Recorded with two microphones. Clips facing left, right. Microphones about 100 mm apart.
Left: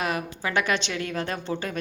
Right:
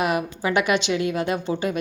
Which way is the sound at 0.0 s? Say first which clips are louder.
Right 5 dB; 15° right (ahead or behind).